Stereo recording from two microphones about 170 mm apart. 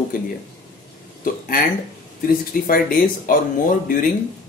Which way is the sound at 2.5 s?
55° left (ahead or behind).